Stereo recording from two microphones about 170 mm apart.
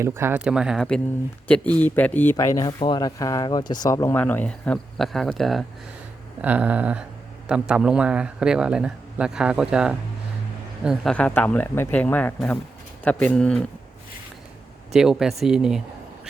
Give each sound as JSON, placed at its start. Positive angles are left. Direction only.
{"t": 0.0, "sound": "a man's voice", "side_deg": -15}
{"t": 6.4, "sound": "a sound", "side_deg": -10}
{"t": 7.4, "sound": "a man's voice", "side_deg": -5}
{"t": 14.9, "sound": "a man's voice", "side_deg": -5}